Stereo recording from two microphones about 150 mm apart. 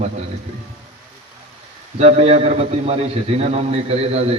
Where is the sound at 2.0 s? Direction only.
45° right (ahead or behind).